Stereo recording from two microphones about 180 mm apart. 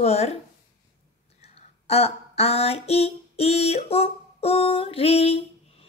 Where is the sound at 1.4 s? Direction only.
35° left (ahead or behind).